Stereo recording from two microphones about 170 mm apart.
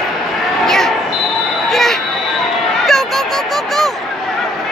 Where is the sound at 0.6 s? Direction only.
Centre (ahead or behind).